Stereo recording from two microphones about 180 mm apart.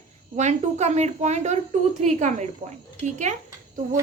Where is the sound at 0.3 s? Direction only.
40° right (ahead or behind).